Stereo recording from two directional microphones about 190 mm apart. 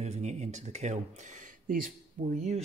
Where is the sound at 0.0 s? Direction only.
35° right (ahead or behind).